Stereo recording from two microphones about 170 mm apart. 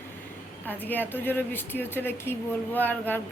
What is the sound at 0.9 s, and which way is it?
Speech, 10° left (ahead or behind).